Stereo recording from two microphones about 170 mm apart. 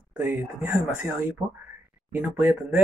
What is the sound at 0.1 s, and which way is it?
Speech, 10° right (ahead or behind).